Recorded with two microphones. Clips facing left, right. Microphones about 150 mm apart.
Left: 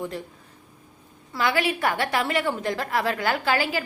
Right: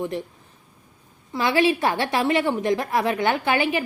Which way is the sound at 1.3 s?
25° right (ahead or behind).